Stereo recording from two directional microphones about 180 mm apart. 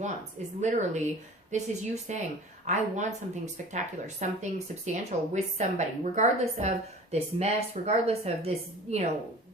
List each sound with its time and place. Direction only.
0.6 s speech: 40° right (ahead or behind)